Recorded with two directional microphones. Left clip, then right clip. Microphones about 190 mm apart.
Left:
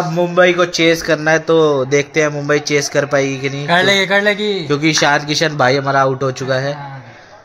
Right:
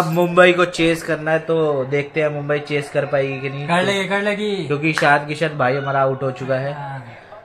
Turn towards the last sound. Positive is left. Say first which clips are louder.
# left 4 dB
turn(degrees=75)  # may be behind; listen again after turning